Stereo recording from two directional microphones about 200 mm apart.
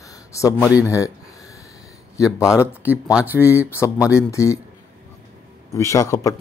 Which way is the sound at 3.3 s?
15° left (ahead or behind).